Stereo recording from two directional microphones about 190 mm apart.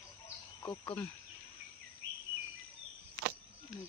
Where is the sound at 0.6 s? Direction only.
25° left (ahead or behind).